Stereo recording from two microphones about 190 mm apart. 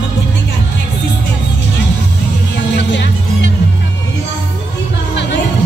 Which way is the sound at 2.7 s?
70° left (ahead or behind).